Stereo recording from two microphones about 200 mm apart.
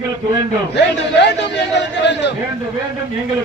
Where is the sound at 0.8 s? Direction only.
60° left (ahead or behind).